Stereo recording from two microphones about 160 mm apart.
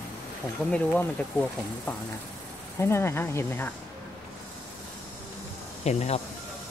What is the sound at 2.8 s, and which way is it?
Speech, 15° left (ahead or behind).